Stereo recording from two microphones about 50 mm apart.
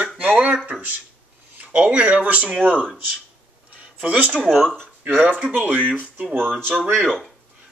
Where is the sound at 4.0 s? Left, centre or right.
Right.